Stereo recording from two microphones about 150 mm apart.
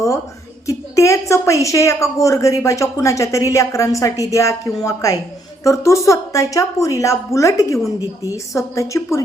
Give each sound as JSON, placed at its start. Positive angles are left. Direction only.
{"t": 0.7, "sound": "a woman's voice", "side_deg": 20}